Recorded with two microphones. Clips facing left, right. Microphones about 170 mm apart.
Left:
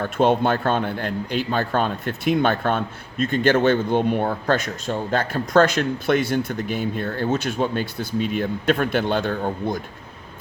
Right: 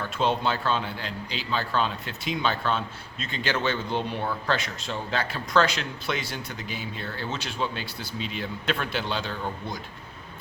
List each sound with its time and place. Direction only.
0.0 s a man's voice: 55° left (ahead or behind)